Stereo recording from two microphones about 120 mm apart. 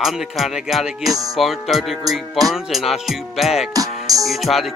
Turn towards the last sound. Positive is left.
turn(degrees=0)  # may be behind; listen again after turning